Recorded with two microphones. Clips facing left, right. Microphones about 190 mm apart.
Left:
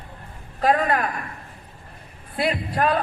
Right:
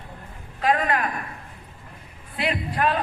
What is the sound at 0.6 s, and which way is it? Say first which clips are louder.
Speech: left 2 dB; 40° left (ahead or behind).